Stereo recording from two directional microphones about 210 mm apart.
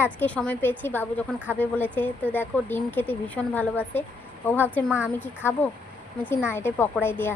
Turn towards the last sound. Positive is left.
turn(degrees=10)  # may be behind; listen again after turning